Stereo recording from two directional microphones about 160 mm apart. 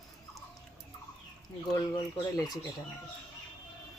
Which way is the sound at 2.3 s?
25° left (ahead or behind).